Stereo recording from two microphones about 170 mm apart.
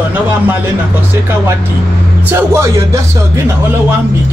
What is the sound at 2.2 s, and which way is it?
Speech, 15° right (ahead or behind).